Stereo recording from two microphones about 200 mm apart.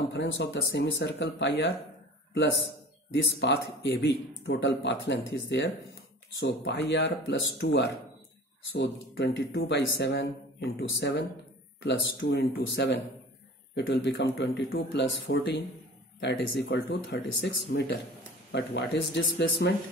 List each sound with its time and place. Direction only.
0.1 s speech: 60° left (ahead or behind)
3.3 s speech: 60° left (ahead or behind)
11.8 s speech: 70° left (ahead or behind)
12.5 s speech: 55° left (ahead or behind)